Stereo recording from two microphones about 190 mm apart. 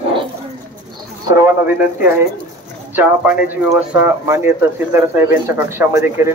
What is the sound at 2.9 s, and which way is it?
Speech, 10° right (ahead or behind).